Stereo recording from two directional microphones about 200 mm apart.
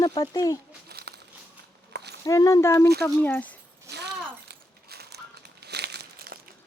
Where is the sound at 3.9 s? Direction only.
55° right (ahead or behind).